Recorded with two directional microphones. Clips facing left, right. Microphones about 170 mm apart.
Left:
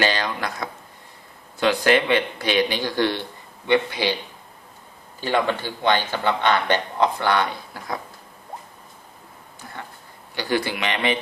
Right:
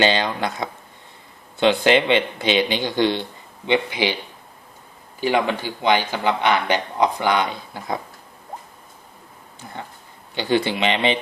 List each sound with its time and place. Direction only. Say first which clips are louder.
0.0 s a man's voice: right 4 dB; 25° right (ahead or behind)
5.2 s a man's voice: right 2 dB; 15° right (ahead or behind)
9.6 s speech: right 3 dB; 20° right (ahead or behind)